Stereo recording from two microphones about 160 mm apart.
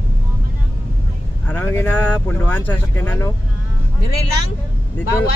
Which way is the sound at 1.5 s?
15° left (ahead or behind).